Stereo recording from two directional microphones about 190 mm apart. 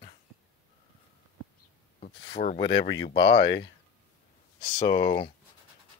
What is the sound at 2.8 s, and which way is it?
Speech, 70° left (ahead or behind).